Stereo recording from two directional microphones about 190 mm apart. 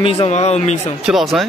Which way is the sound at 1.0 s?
Centre (ahead or behind).